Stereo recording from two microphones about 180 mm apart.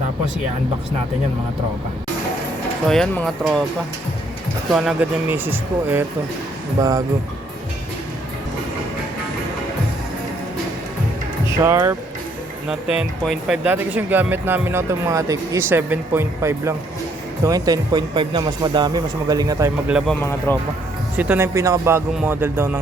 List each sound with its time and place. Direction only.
2.8 s speech: 5° left (ahead or behind)
4.7 s speech: centre (ahead or behind); by 7.0 s 20° right (ahead or behind)
11.4 s speech: 15° right (ahead or behind)
13.0 s speech: centre (ahead or behind); by 19.7 s 20° right (ahead or behind)
19.9 s speech: 5° right (ahead or behind)
20.5 s speech: 15° left (ahead or behind)
21.2 s speech: 10° right (ahead or behind)